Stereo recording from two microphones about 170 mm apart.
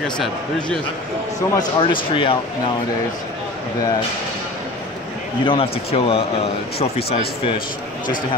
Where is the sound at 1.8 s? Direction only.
30° left (ahead or behind).